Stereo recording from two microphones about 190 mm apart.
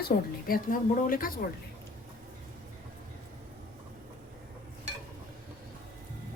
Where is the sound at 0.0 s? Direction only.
50° left (ahead or behind).